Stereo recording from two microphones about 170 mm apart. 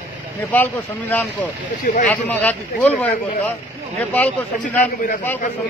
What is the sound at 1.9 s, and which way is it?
Speech, 45° left (ahead or behind).